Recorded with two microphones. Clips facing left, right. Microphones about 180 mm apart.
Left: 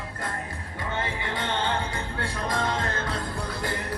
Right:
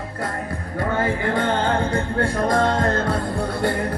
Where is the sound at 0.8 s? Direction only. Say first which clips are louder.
Right 9 dB; 45° right (ahead or behind).